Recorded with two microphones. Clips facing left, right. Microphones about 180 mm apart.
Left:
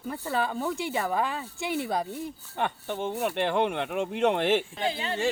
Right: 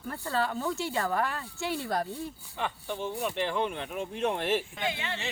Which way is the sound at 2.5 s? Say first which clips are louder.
Left 4 dB; 55° left (ahead or behind).